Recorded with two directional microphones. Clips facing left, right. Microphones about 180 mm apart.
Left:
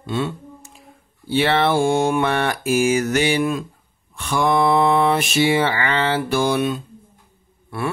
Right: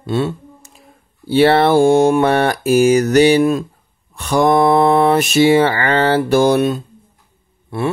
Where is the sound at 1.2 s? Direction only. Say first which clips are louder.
Right 7 dB; 40° right (ahead or behind).